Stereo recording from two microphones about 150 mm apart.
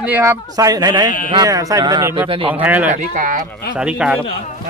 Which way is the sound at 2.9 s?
60° right (ahead or behind).